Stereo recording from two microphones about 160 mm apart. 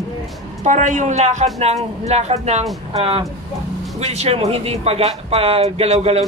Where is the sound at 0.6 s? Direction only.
50° right (ahead or behind).